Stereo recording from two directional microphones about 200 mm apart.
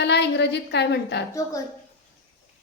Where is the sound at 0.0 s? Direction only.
60° left (ahead or behind).